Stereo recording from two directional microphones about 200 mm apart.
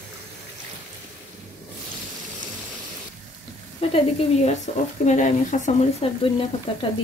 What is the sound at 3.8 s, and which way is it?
A woman's voice, 30° left (ahead or behind).